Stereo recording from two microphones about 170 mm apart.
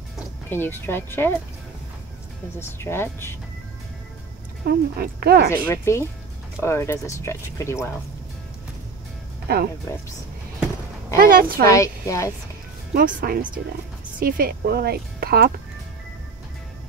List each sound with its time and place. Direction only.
0.5 s speech: 15° left (ahead or behind)
2.6 s speech: 15° left (ahead or behind)
4.6 s a woman's voice: 65° right (ahead or behind)
5.7 s speech: 15° left (ahead or behind)
9.5 s speech: 60° right (ahead or behind)
11.1 s speech: 55° right (ahead or behind)
11.6 s speech: 20° left (ahead or behind)
12.9 s speech: 60° right (ahead or behind)